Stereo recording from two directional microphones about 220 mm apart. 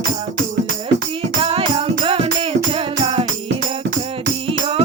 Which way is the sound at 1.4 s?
25° right (ahead or behind).